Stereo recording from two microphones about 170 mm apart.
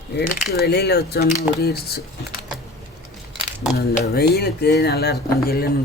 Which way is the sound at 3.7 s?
70° left (ahead or behind).